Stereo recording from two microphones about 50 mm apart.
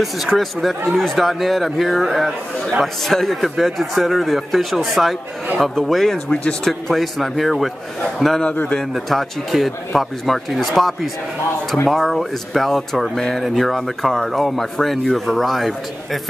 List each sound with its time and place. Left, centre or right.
0.0 s a man's voice: centre
6.3 s a man's voice: centre
6.7 s speech: centre